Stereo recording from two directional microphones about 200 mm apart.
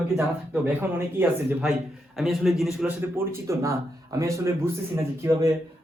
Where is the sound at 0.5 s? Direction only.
10° right (ahead or behind).